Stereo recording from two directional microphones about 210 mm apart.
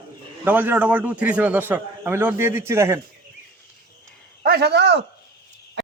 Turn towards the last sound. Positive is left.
turn(degrees=-55)  # may be behind; listen again after turning